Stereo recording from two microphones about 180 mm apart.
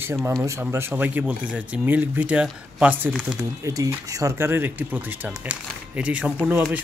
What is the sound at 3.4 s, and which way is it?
Speech, 15° right (ahead or behind).